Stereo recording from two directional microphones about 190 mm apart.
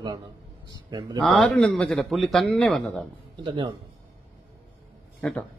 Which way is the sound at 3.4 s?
25° right (ahead or behind).